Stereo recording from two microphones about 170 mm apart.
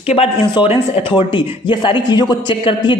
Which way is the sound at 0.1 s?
35° left (ahead or behind).